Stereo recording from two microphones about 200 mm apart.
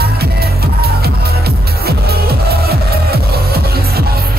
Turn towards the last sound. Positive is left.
turn(degrees=-50)  # may be behind; listen again after turning